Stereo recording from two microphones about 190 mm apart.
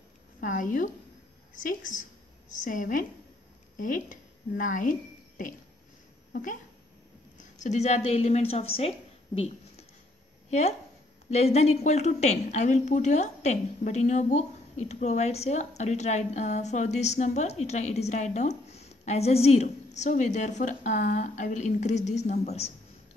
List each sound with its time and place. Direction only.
0.4 s a woman's voice: 45° left (ahead or behind)
6.3 s a woman's voice: 45° left (ahead or behind)
7.6 s a woman's voice: 35° left (ahead or behind)
11.2 s a woman's voice: 35° left (ahead or behind)